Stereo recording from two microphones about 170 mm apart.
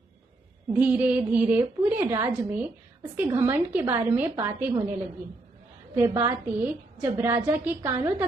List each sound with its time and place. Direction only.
0.7 s a woman's voice: 10° right (ahead or behind)